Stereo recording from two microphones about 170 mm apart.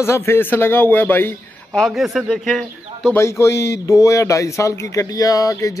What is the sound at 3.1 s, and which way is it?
Speech, 15° left (ahead or behind).